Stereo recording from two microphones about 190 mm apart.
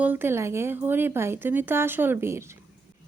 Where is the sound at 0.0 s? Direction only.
10° right (ahead or behind).